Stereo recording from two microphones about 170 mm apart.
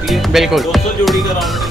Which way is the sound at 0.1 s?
Centre (ahead or behind).